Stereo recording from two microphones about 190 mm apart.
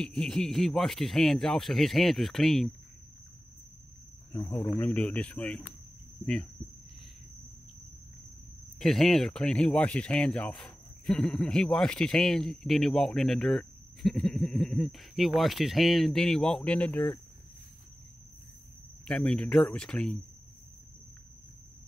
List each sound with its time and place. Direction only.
0.0 s speech: 5° left (ahead or behind)
4.3 s speech: 15° left (ahead or behind)
4.7 s speech: 10° left (ahead or behind)
8.7 s speech: centre (ahead or behind)
19.0 s speech: 5° left (ahead or behind)